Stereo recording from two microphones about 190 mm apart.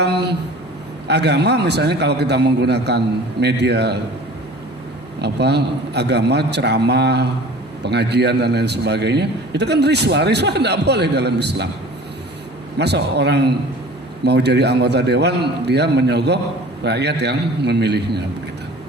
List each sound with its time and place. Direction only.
0.0 s a sound: 60° right (ahead or behind)
1.0 s a man's voice: 60° right (ahead or behind)
5.2 s a man's voice: 60° right (ahead or behind)
12.8 s a man's voice: 60° right (ahead or behind)